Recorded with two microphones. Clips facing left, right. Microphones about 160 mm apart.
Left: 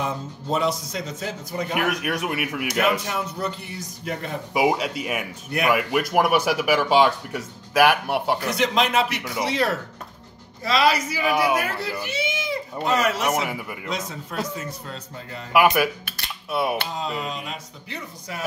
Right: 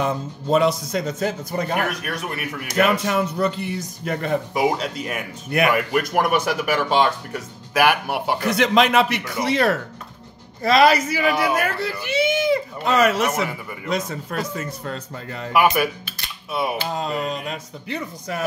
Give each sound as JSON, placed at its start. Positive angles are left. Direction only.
{"t": 0.0, "sound": "speech", "side_deg": -60}
{"t": 1.8, "sound": "speech", "side_deg": 15}
{"t": 2.8, "sound": "speech", "side_deg": -65}
{"t": 4.6, "sound": "speech", "side_deg": 10}
{"t": 8.4, "sound": "speech", "side_deg": -65}
{"t": 11.2, "sound": "speech", "side_deg": 10}
{"t": 11.5, "sound": "speech", "side_deg": -60}
{"t": 13.2, "sound": "speech", "side_deg": 15}
{"t": 13.8, "sound": "speech", "side_deg": -50}
{"t": 14.9, "sound": "speech", "side_deg": -60}
{"t": 15.5, "sound": "speech", "side_deg": 0}
{"t": 16.9, "sound": "speech", "side_deg": -50}